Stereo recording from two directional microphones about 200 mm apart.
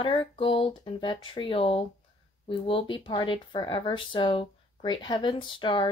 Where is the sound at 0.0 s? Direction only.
25° left (ahead or behind).